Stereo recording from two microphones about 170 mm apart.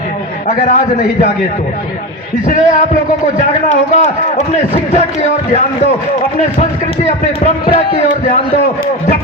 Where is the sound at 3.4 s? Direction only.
45° left (ahead or behind).